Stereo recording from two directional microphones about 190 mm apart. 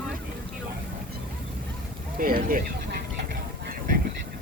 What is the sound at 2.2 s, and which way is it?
Speech, 50° right (ahead or behind).